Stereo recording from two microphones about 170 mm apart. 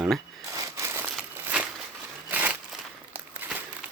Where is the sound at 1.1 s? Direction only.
5° right (ahead or behind).